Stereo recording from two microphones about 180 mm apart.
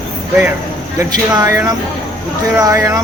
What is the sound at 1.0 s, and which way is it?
Speech, 15° right (ahead or behind).